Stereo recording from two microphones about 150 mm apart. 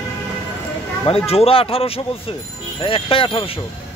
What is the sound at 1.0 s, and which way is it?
Speech, 40° left (ahead or behind).